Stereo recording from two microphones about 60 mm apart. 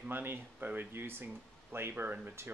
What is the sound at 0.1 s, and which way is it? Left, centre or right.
Speech, right.